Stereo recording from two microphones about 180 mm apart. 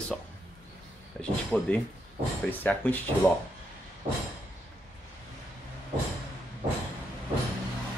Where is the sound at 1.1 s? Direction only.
5° left (ahead or behind).